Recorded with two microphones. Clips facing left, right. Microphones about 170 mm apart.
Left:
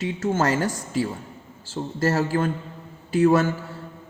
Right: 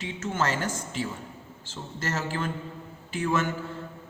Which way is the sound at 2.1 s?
45° left (ahead or behind).